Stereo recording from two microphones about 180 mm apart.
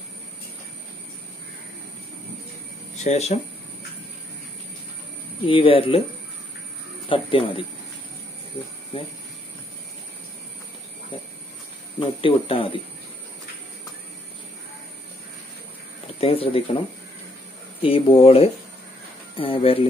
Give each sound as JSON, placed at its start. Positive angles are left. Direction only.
{"t": 3.0, "sound": "speech", "side_deg": 40}
{"t": 5.4, "sound": "speech", "side_deg": 30}
{"t": 7.1, "sound": "speech", "side_deg": 30}
{"t": 12.0, "sound": "speech", "side_deg": 30}
{"t": 16.2, "sound": "speech", "side_deg": 30}
{"t": 17.8, "sound": "speech", "side_deg": 30}